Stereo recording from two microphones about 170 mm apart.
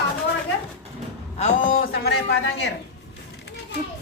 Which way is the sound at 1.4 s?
45° left (ahead or behind).